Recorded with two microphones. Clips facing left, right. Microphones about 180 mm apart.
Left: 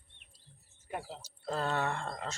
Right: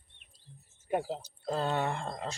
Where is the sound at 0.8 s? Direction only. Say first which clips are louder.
Right 9 dB; 25° right (ahead or behind).